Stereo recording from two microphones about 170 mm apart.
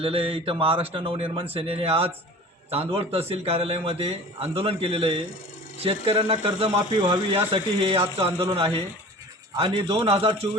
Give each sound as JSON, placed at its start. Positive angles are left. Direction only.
{"t": 0.0, "sound": "a man's voice", "side_deg": -35}